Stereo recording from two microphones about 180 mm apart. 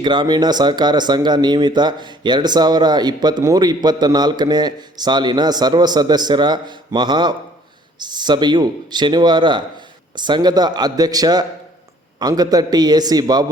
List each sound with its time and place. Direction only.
0.0 s speech: 25° right (ahead or behind)